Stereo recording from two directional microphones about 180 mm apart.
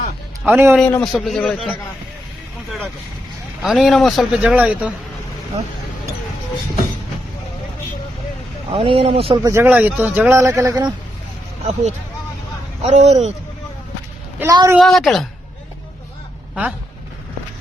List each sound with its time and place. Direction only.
0.4 s speech: 10° right (ahead or behind)
0.8 s a man's voice: 5° left (ahead or behind)
3.6 s a man's voice: centre (ahead or behind)
8.7 s a man's voice: 30° right (ahead or behind)
9.4 s speech: 15° right (ahead or behind)
11.6 s a man's voice: 40° right (ahead or behind)
14.3 s speech: 20° right (ahead or behind)
14.8 s a man's voice: centre (ahead or behind)